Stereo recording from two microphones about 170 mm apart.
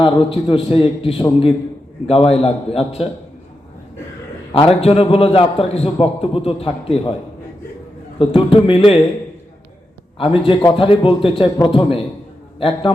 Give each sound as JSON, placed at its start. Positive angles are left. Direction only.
{"t": 0.0, "sound": "a man's voice", "side_deg": 30}
{"t": 4.8, "sound": "a man's voice", "side_deg": 35}
{"t": 8.2, "sound": "a man's voice", "side_deg": 30}
{"t": 10.2, "sound": "a man's voice", "side_deg": 30}